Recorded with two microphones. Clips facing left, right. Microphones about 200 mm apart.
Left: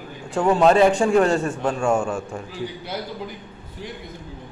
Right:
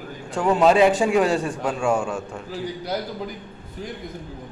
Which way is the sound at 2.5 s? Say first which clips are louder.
Right 5 dB; 40° right (ahead or behind).